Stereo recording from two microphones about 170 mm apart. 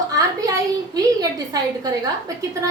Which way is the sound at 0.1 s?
20° right (ahead or behind).